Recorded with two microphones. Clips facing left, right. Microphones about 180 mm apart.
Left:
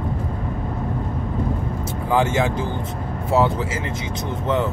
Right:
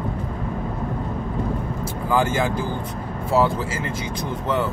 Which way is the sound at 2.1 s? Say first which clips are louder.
Left 1 dB; 25° left (ahead or behind).